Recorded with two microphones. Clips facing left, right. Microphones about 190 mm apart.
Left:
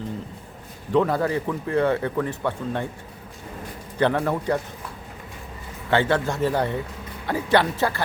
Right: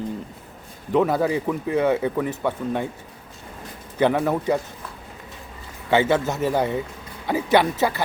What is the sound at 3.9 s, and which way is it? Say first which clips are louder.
Speech: right 2 dB; 10° right (ahead or behind).